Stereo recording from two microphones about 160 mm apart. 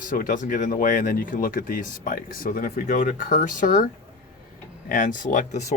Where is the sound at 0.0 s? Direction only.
55° left (ahead or behind).